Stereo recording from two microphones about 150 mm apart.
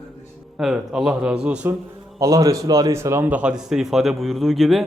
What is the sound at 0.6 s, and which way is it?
A man's voice, 5° right (ahead or behind).